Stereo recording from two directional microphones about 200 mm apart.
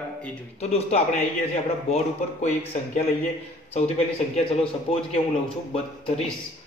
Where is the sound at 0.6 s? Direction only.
30° left (ahead or behind).